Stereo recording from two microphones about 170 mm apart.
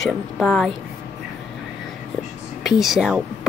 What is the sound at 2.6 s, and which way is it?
Speech, centre (ahead or behind).